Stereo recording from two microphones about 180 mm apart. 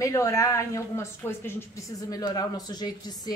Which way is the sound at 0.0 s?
15° left (ahead or behind).